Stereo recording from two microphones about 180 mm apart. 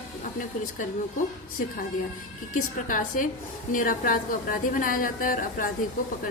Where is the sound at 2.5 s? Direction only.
50° left (ahead or behind).